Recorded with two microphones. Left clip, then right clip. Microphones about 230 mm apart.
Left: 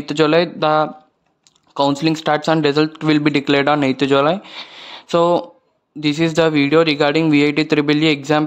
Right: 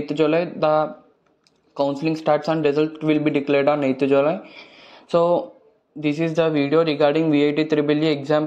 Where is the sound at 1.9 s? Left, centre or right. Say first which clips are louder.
Left 3 dB; left.